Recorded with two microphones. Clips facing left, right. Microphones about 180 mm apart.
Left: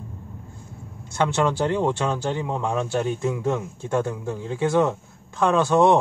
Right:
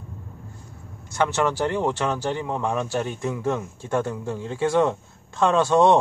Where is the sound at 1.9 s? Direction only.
10° left (ahead or behind).